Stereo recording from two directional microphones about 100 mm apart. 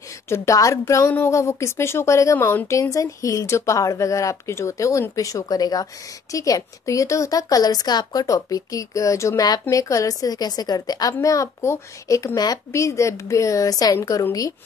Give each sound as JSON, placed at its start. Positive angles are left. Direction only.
{"t": 0.3, "sound": "a woman's voice", "side_deg": 30}